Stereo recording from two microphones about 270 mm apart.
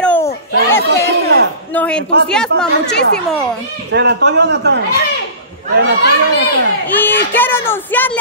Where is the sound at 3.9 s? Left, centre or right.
Right.